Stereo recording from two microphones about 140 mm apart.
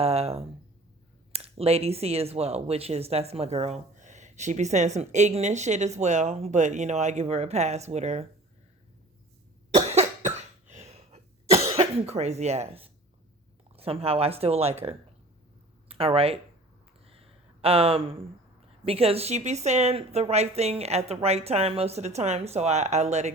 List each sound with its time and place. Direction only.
0.0 s speech: 45° right (ahead or behind)
9.7 s cough: 50° right (ahead or behind)
13.7 s speech: 45° right (ahead or behind)
17.1 s a sound: 45° right (ahead or behind)
18.9 s speech: 45° right (ahead or behind)